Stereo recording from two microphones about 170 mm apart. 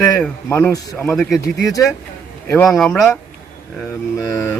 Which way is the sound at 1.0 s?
5° left (ahead or behind).